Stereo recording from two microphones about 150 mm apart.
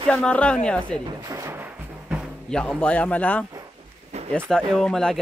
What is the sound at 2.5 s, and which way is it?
A man's voice, 5° left (ahead or behind).